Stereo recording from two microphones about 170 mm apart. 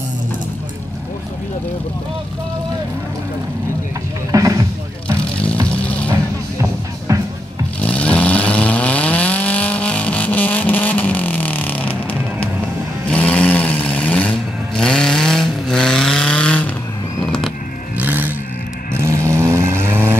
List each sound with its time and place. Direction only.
4.3 s music: 20° right (ahead or behind)
5.2 s music: 5° left (ahead or behind)
7.1 s music: 20° right (ahead or behind)
7.8 s chainsaw: 10° left (ahead or behind)
13.1 s vehicle: 5° left (ahead or behind)
14.8 s chainsaw: 5° left (ahead or behind)
17.9 s vehicle: 10° right (ahead or behind)